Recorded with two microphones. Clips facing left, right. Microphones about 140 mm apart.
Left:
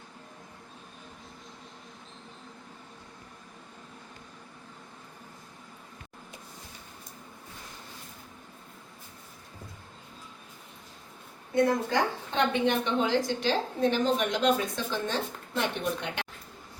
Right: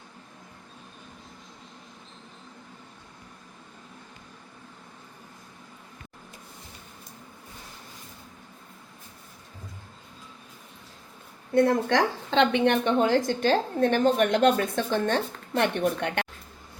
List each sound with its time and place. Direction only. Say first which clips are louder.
11.5 s a woman's voice: right 4 dB; 75° right (ahead or behind); by 16.2 s 60° right (ahead or behind)